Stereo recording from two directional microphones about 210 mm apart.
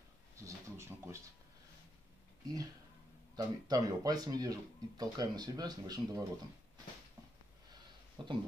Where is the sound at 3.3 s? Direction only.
20° right (ahead or behind).